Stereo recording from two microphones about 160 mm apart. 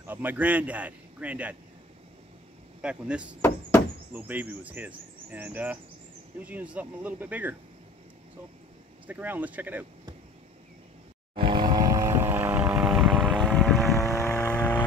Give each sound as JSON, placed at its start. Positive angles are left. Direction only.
{"t": 0.0, "sound": "speech", "side_deg": -10}
{"t": 2.8, "sound": "speech", "side_deg": -5}
{"t": 3.3, "sound": "speech", "side_deg": 15}
{"t": 4.1, "sound": "speech", "side_deg": -10}
{"t": 9.0, "sound": "speech", "side_deg": -10}
{"t": 11.3, "sound": "vehicle", "side_deg": -30}